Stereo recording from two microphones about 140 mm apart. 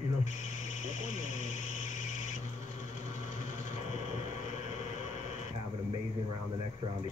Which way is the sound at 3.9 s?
55° left (ahead or behind).